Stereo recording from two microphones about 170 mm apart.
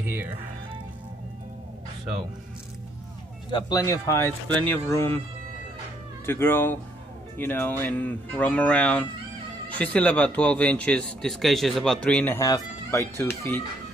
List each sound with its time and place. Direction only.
0.0 s speech: 10° right (ahead or behind)
3.5 s speech: 25° left (ahead or behind)
6.2 s speech: 15° left (ahead or behind)
12.4 s speech: 20° left (ahead or behind)